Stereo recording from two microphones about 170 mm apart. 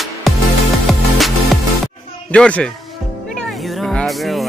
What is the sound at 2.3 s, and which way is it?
A man's voice, 5° left (ahead or behind).